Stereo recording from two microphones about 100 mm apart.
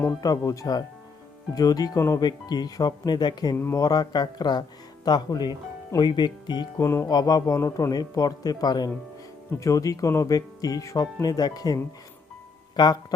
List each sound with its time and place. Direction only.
0.2 s speech: 35° left (ahead or behind)
2.2 s speech: 45° left (ahead or behind)
6.8 s music: 25° left (ahead or behind)
7.1 s speech: 40° left (ahead or behind)